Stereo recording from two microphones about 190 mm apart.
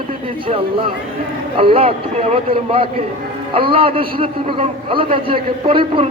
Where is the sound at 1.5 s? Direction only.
30° right (ahead or behind).